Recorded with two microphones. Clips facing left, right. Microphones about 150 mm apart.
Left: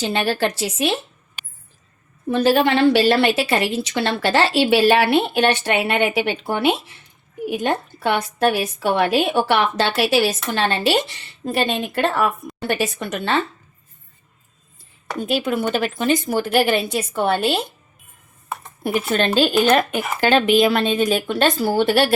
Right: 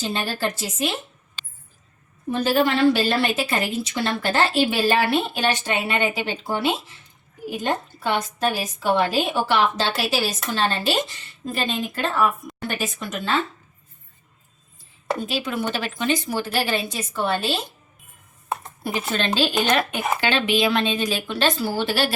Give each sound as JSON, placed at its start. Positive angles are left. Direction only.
{"t": 0.0, "sound": "a woman's voice", "side_deg": 70}
{"t": 2.3, "sound": "a woman's voice", "side_deg": 80}
{"t": 15.3, "sound": "speech", "side_deg": 50}
{"t": 18.8, "sound": "speech", "side_deg": 50}